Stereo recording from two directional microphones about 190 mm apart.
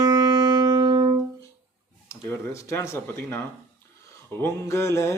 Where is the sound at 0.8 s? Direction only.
20° right (ahead or behind).